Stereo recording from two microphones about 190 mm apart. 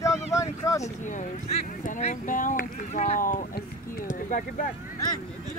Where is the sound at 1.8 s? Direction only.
40° left (ahead or behind).